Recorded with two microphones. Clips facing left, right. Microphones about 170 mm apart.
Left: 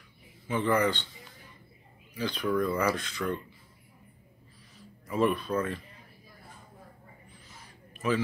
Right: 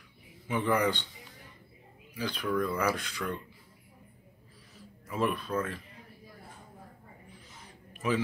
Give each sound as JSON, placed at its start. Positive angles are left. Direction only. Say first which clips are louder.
{"t": 0.7, "sound": "speech", "louder": "left 2 dB", "side_deg": -10}
{"t": 2.1, "sound": "speech", "louder": "left 2 dB", "side_deg": -5}
{"t": 2.4, "sound": "speech", "louder": "left 3 dB", "side_deg": 5}
{"t": 2.8, "sound": "speech", "louder": "left 2 dB", "side_deg": -10}
{"t": 5.0, "sound": "speech", "louder": "left 4 dB", "side_deg": 0}
{"t": 7.9, "sound": "a sound", "louder": "left 1 dB", "side_deg": -15}